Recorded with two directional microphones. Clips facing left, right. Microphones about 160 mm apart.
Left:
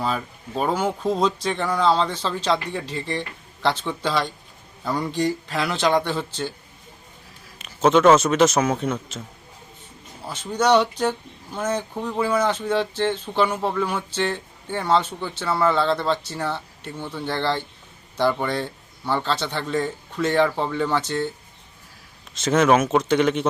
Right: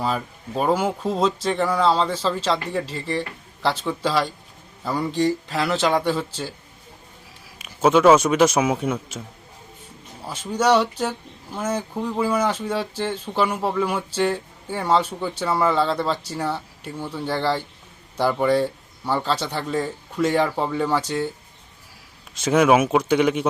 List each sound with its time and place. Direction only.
0.0 s speech: 5° right (ahead or behind)
7.6 s speech: 10° right (ahead or behind)
10.2 s speech: 10° right (ahead or behind)
22.4 s speech: 10° right (ahead or behind)